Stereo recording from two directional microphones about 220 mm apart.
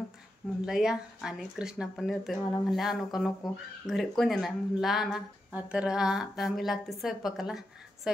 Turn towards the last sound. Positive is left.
turn(degrees=0)  # may be behind; listen again after turning